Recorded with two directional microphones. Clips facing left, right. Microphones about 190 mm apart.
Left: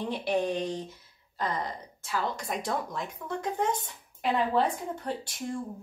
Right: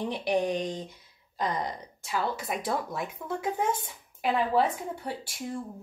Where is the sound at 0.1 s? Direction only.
15° right (ahead or behind).